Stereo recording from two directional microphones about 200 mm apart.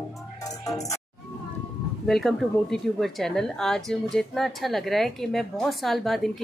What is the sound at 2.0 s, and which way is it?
Speech, centre (ahead or behind).